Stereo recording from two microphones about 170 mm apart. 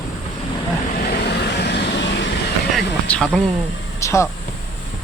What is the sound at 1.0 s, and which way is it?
Vehicle, 70° left (ahead or behind).